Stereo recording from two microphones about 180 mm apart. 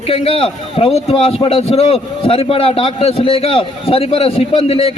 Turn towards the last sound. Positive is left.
turn(degrees=35)  # may be behind; listen again after turning